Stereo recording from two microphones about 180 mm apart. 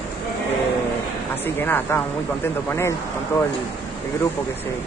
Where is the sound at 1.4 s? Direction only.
10° left (ahead or behind).